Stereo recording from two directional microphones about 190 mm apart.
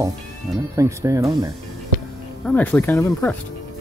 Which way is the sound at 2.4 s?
10° left (ahead or behind).